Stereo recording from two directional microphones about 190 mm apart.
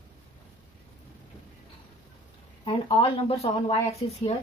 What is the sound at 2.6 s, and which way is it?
Speech, 30° left (ahead or behind).